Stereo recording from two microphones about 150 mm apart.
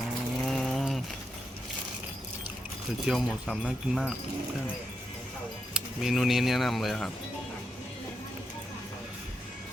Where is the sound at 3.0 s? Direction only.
Centre (ahead or behind).